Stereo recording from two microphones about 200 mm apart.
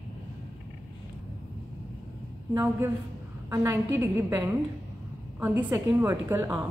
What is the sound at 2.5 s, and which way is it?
A woman's voice, 10° right (ahead or behind).